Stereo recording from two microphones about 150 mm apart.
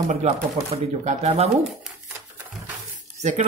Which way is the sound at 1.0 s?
45° right (ahead or behind).